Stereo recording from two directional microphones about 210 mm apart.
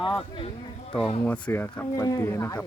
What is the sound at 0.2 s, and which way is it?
Speech, 25° left (ahead or behind).